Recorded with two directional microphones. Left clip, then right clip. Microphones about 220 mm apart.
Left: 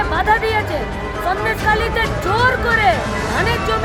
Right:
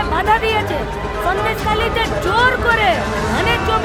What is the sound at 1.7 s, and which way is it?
Speech, 5° right (ahead or behind).